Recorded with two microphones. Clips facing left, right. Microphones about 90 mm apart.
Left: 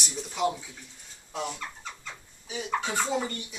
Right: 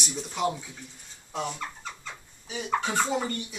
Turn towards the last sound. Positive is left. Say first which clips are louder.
# right 2 dB
turn(degrees=-5)  # may be behind; listen again after turning